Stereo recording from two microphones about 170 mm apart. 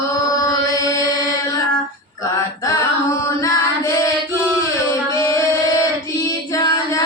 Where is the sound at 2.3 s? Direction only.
20° left (ahead or behind).